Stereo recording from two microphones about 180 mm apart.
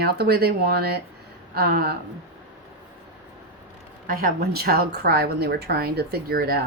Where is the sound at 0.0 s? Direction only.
60° right (ahead or behind).